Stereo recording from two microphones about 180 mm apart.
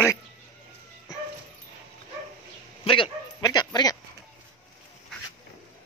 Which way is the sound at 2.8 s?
30° left (ahead or behind).